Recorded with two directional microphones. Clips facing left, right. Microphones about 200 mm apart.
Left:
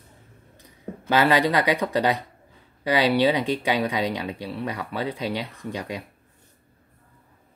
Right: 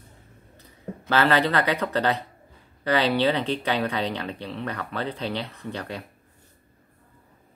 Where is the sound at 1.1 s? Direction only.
15° left (ahead or behind).